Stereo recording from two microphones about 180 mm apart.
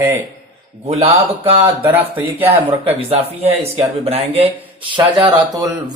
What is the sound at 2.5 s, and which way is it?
Speech, 30° right (ahead or behind).